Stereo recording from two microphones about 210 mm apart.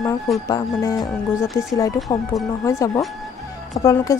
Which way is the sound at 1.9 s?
Centre (ahead or behind).